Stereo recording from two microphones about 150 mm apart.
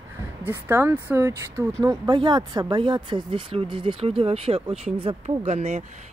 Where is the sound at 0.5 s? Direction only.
15° right (ahead or behind); by 5.8 s 45° right (ahead or behind).